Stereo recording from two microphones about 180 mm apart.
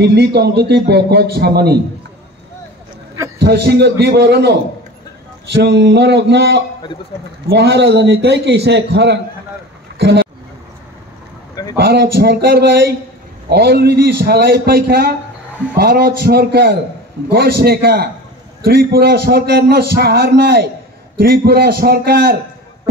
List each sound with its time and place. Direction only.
0.0 s speech: 65° right (ahead or behind)
3.3 s a man's voice: 65° right (ahead or behind)
11.7 s speech: 65° right (ahead or behind)